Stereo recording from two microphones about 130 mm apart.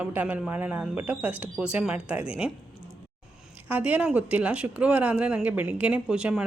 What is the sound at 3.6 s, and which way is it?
A woman's voice, 10° right (ahead or behind).